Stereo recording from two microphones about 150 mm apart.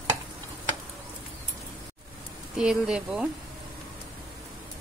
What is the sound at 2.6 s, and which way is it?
Speech, 5° right (ahead or behind).